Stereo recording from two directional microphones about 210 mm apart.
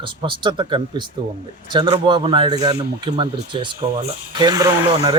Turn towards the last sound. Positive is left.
turn(degrees=-15)  # may be behind; listen again after turning